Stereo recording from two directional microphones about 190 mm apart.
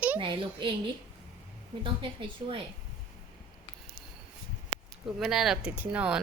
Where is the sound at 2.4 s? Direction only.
20° right (ahead or behind).